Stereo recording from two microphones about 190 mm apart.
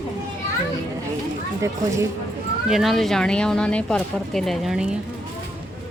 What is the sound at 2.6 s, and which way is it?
Speech, centre (ahead or behind).